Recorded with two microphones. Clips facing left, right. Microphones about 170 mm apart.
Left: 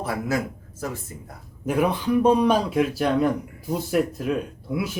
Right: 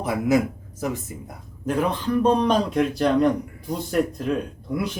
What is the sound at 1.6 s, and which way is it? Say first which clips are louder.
Speech: left 1 dB; 10° left (ahead or behind).